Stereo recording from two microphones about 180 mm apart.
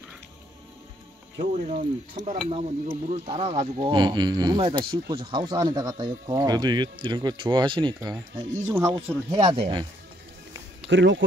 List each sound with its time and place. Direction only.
1.4 s stir: 35° right (ahead or behind)
2.5 s speech: 35° right (ahead or behind)
8.6 s speech: 15° right (ahead or behind)
9.4 s speech: 25° right (ahead or behind)
10.9 s speech: 90° right